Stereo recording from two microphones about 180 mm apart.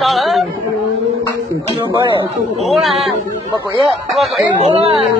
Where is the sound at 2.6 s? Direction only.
Centre (ahead or behind).